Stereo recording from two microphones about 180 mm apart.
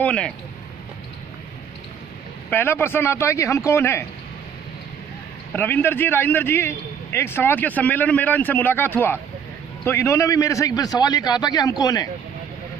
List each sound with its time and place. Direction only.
0.0 s a man's voice: 5° left (ahead or behind)
2.5 s a man's voice: 10° left (ahead or behind)
5.5 s a man's voice: 10° left (ahead or behind)